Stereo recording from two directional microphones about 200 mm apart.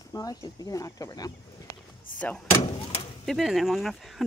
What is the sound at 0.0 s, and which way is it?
Speech, 20° left (ahead or behind).